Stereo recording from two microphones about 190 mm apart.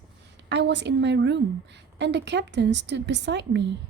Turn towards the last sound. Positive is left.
turn(degrees=-65)  # may be behind; listen again after turning